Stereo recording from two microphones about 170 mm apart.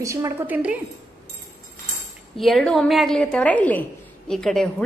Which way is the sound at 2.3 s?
Centre (ahead or behind).